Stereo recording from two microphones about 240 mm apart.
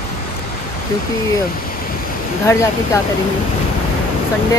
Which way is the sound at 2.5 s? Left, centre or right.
Centre.